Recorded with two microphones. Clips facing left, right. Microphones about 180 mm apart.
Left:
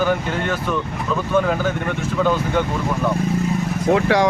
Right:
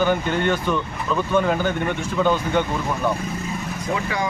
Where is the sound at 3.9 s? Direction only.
70° left (ahead or behind).